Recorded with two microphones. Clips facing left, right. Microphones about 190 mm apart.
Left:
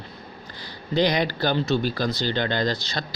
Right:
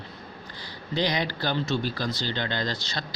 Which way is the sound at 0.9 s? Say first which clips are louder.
Left 5 dB; 40° left (ahead or behind).